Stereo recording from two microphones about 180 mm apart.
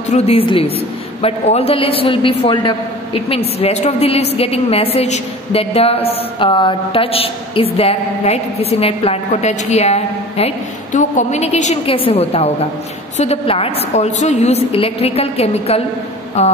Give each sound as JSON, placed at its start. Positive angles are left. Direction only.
{"t": 0.1, "sound": "a woman's voice", "side_deg": 35}